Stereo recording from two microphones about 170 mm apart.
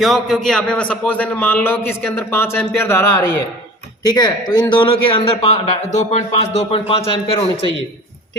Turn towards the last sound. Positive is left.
turn(degrees=35)  # may be behind; listen again after turning